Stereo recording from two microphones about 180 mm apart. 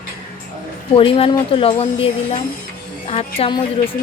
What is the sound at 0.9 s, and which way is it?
A woman's voice, 30° left (ahead or behind).